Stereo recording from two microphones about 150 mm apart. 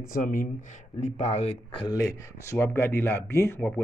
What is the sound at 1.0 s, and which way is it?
Speech, 50° left (ahead or behind).